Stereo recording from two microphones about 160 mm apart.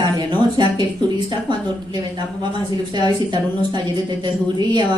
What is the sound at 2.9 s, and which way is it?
A woman's voice, 25° right (ahead or behind).